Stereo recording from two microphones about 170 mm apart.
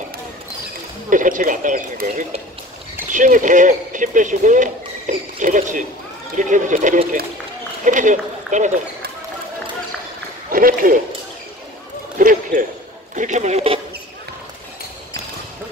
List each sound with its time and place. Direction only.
1.1 s speech: 50° right (ahead or behind)
10.5 s a man's voice: 55° right (ahead or behind)
12.2 s basketball bounce: 55° right (ahead or behind)
13.1 s speech: 45° right (ahead or behind)